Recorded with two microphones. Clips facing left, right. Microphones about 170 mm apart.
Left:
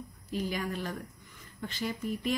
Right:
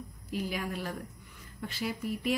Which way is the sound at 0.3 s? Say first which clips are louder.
Left 1 dB; 5° right (ahead or behind).